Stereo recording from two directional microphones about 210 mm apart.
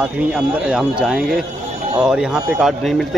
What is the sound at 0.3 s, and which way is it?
A man's voice, 5° right (ahead or behind).